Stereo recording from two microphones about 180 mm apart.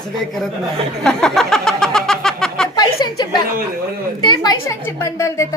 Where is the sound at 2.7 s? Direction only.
25° left (ahead or behind).